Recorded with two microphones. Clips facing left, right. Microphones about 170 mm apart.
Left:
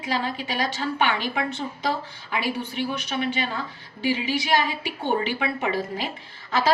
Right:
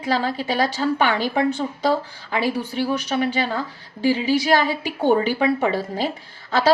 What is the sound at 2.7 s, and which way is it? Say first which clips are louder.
A woman's voice: right 5 dB; 40° right (ahead or behind).